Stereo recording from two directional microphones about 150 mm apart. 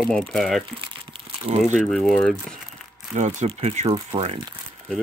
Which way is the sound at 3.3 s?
45° right (ahead or behind).